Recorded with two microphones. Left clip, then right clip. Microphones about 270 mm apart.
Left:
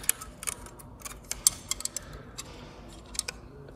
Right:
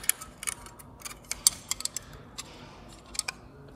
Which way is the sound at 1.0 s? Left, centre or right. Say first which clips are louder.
Right 1 dB; centre.